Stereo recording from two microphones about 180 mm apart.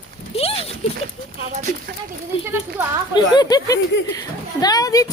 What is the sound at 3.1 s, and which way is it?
Speech, 25° left (ahead or behind).